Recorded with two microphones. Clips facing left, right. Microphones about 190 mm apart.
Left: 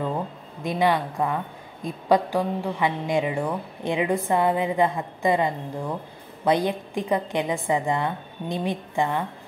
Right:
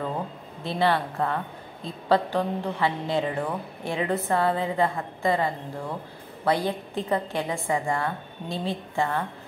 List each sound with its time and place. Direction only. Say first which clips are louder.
0.7 s a woman's voice: left 2 dB; 15° left (ahead or behind)